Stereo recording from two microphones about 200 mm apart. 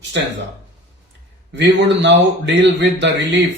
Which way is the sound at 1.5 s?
65° right (ahead or behind).